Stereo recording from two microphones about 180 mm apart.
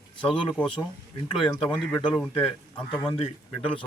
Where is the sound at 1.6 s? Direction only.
5° left (ahead or behind).